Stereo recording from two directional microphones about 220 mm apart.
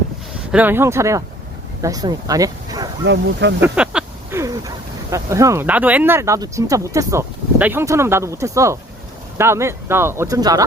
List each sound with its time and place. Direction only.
0.5 s speech: 10° right (ahead or behind)
3.0 s speech: 55° right (ahead or behind)
3.6 s a sound: 5° right (ahead or behind)
5.1 s speech: 15° right (ahead or behind)